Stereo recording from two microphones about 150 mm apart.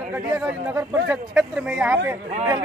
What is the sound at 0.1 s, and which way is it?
Speech, 10° right (ahead or behind).